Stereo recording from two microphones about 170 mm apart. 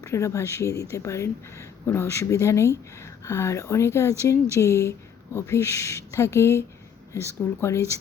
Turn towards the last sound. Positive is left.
turn(degrees=15)  # may be behind; listen again after turning